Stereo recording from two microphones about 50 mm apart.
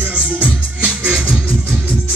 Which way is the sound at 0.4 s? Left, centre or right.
Right.